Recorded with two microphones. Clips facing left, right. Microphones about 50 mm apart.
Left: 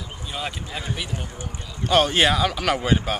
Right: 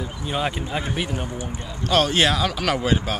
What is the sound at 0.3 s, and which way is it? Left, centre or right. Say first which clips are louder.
Speech: right 6 dB; right.